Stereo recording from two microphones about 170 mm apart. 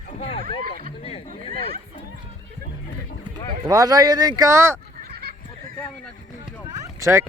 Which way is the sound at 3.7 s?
20° right (ahead or behind).